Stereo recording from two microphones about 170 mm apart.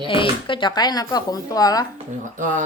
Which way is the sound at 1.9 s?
50° right (ahead or behind).